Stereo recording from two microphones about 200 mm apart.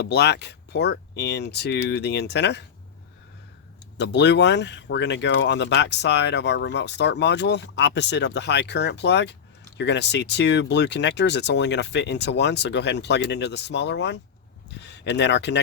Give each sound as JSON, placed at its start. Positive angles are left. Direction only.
{"t": 0.1, "sound": "speech", "side_deg": 55}
{"t": 3.9, "sound": "speech", "side_deg": 60}